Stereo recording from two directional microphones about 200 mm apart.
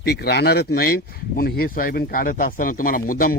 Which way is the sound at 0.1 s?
55° left (ahead or behind).